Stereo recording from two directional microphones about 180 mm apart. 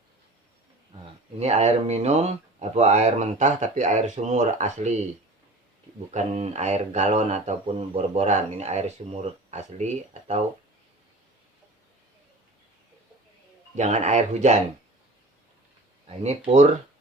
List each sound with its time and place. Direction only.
1.4 s speech: 35° right (ahead or behind)
6.1 s speech: 40° right (ahead or behind)
13.7 s speech: 40° right (ahead or behind)